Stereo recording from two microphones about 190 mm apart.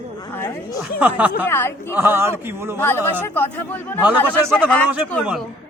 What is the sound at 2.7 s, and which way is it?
Speech, 10° left (ahead or behind).